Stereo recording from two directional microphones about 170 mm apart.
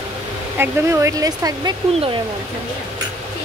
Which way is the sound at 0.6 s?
15° right (ahead or behind).